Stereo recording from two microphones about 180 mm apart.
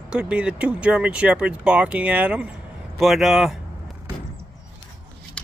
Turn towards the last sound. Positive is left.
turn(degrees=0)  # may be behind; listen again after turning